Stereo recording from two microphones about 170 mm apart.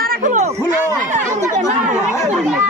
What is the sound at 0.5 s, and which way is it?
Speech, 15° right (ahead or behind).